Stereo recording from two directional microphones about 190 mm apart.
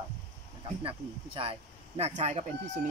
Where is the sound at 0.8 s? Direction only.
30° right (ahead or behind).